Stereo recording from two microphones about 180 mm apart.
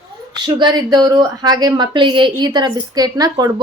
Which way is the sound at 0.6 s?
25° right (ahead or behind).